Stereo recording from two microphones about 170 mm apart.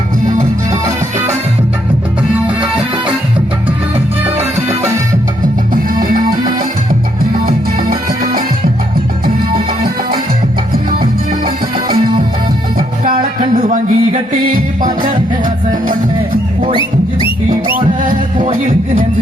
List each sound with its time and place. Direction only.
0.3 s music: 45° right (ahead or behind)
6.1 s music: 55° right (ahead or behind)
7.4 s music: 60° right (ahead or behind)
13.6 s music: 45° right (ahead or behind)
16.7 s music: 30° left (ahead or behind)
17.7 s music: 50° right (ahead or behind)